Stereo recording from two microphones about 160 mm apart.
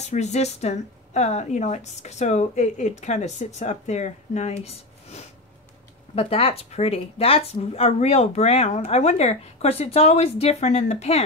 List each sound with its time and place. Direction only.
0.0 s speech: 45° left (ahead or behind)